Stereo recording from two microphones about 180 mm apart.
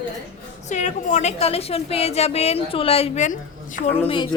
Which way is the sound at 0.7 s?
40° left (ahead or behind).